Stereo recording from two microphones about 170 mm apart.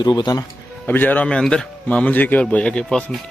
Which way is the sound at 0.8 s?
10° left (ahead or behind).